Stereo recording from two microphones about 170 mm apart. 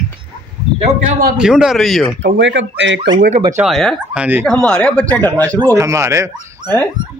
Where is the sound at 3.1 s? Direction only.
45° right (ahead or behind).